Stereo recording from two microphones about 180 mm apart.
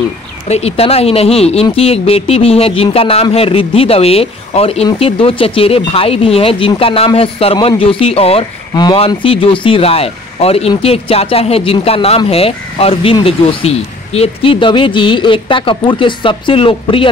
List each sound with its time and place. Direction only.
0.5 s speech: 35° left (ahead or behind)